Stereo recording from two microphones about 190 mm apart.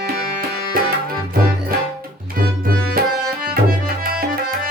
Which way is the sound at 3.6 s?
50° right (ahead or behind).